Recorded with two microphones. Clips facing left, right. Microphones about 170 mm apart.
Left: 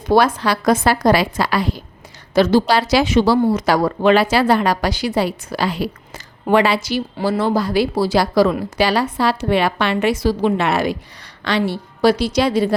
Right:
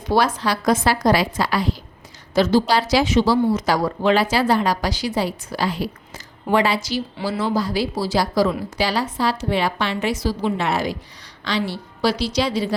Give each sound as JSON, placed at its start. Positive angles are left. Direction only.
{"t": 0.1, "sound": "a woman's voice", "side_deg": 60}